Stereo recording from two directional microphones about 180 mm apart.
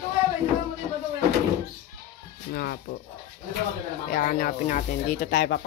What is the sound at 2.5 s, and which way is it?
Speech, 60° left (ahead or behind).